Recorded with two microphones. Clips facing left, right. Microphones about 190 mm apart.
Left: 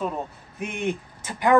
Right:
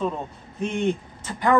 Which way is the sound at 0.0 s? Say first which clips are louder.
Right 2 dB; 10° left (ahead or behind).